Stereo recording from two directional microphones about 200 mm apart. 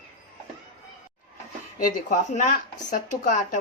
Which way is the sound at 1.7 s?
40° left (ahead or behind).